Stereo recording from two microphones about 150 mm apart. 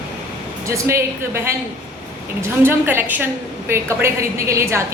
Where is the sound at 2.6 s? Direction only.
15° right (ahead or behind).